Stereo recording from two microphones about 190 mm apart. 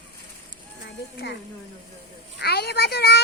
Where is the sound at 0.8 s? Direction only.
65° left (ahead or behind).